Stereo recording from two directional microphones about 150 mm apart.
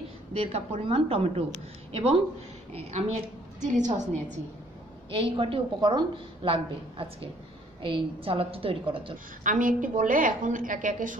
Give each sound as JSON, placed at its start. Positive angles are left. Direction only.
{"t": 0.3, "sound": "a woman's voice", "side_deg": -45}
{"t": 5.1, "sound": "a woman's voice", "side_deg": -35}
{"t": 9.4, "sound": "a woman's voice", "side_deg": -60}